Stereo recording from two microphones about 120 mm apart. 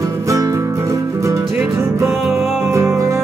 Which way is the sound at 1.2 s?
25° right (ahead or behind).